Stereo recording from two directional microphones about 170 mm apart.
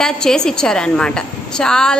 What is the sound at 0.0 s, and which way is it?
A woman's voice, 5° left (ahead or behind).